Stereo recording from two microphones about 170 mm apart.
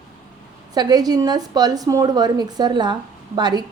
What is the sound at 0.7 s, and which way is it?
A woman's voice, 25° right (ahead or behind).